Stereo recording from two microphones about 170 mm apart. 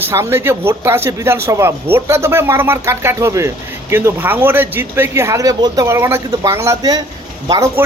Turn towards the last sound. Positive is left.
turn(degrees=-20)  # may be behind; listen again after turning